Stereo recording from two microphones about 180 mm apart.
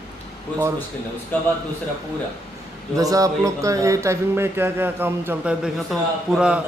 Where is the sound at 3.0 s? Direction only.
20° right (ahead or behind).